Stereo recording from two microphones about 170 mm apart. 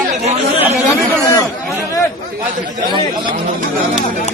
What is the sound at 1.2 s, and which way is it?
Speech, 20° left (ahead or behind).